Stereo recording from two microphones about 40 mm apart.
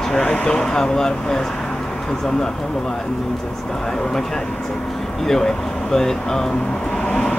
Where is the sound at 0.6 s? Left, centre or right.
Centre.